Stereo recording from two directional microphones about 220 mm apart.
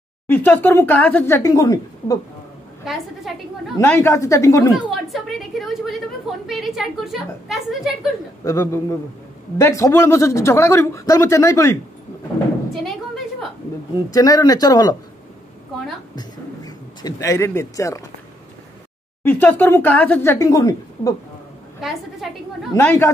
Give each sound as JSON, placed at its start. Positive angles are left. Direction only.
{"t": 0.3, "sound": "speech", "side_deg": 10}
{"t": 2.8, "sound": "a woman's voice", "side_deg": 0}
{"t": 3.7, "sound": "speech", "side_deg": 10}
{"t": 4.7, "sound": "a woman's voice", "side_deg": 0}
{"t": 8.5, "sound": "speech", "side_deg": 15}
{"t": 14.1, "sound": "speech", "side_deg": 15}
{"t": 16.2, "sound": "speech", "side_deg": 15}
{"t": 19.2, "sound": "speech", "side_deg": 10}
{"t": 22.2, "sound": "a woman's voice", "side_deg": 0}